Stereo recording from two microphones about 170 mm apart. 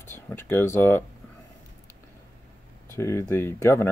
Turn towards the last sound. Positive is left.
turn(degrees=15)  # may be behind; listen again after turning